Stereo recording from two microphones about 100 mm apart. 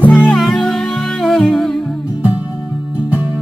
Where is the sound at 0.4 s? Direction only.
Centre (ahead or behind).